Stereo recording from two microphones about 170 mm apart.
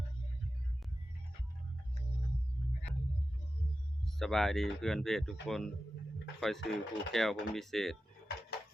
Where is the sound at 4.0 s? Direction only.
Centre (ahead or behind).